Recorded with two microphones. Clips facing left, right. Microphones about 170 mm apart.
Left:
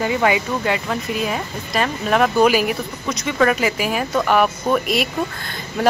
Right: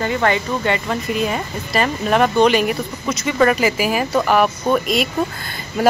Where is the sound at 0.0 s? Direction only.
10° left (ahead or behind).